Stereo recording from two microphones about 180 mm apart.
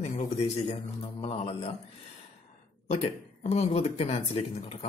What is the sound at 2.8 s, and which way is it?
Speech, 40° left (ahead or behind).